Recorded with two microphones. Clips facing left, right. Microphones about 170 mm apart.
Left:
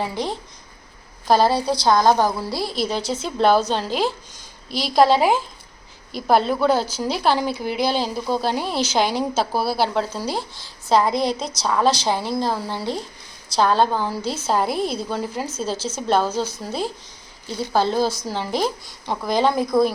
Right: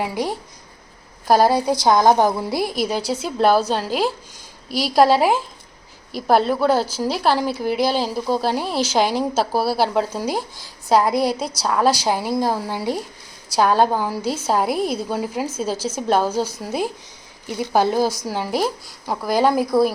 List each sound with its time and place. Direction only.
0.0 s a woman's voice: 10° right (ahead or behind)